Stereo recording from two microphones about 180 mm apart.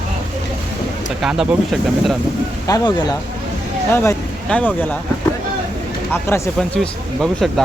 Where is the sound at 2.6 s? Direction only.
20° left (ahead or behind).